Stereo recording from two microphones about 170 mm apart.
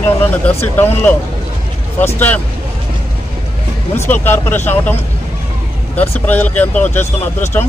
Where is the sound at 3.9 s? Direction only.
10° left (ahead or behind).